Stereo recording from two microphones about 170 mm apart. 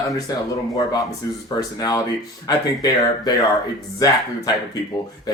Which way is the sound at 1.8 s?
20° left (ahead or behind).